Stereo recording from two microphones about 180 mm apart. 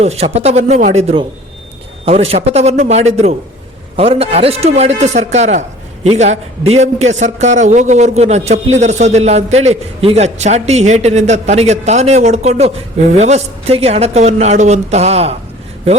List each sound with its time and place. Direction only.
0.0 s a man's voice: 35° right (ahead or behind)